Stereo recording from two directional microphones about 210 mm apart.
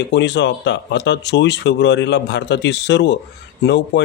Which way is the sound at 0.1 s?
55° left (ahead or behind).